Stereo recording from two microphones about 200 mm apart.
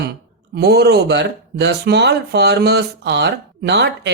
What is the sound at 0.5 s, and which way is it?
Speech, 55° right (ahead or behind).